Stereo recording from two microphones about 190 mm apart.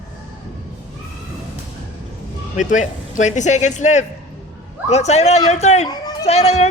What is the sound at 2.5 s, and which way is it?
Speech, 40° left (ahead or behind).